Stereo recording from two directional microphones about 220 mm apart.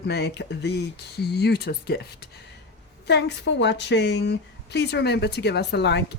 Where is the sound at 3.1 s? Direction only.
50° left (ahead or behind).